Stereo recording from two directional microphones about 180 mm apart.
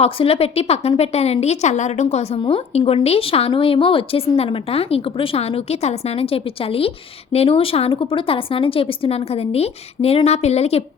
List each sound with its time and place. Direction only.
0.0 s a woman's voice: 35° left (ahead or behind)